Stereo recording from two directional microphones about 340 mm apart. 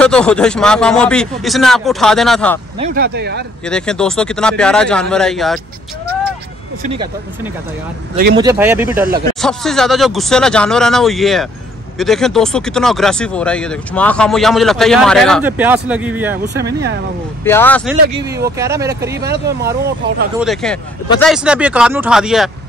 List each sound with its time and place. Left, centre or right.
0.0 s speech: centre
2.8 s speech: right
3.6 s speech: centre
8.4 s speech: centre
17.5 s speech: centre
18.6 s speech: centre
19.2 s speech: right
20.3 s speech: centre